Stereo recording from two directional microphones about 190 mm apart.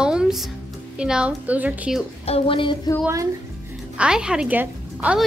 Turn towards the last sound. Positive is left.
turn(degrees=-10)  # may be behind; listen again after turning